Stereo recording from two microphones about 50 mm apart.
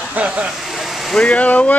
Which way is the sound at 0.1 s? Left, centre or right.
Right.